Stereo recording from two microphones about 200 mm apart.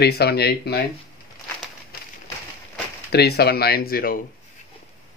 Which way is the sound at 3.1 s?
50° left (ahead or behind).